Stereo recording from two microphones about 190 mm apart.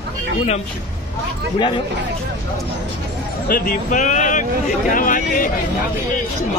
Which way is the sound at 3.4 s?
45° left (ahead or behind).